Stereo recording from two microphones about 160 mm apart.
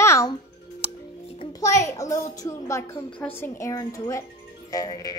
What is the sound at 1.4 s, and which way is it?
A woman's voice, 20° left (ahead or behind).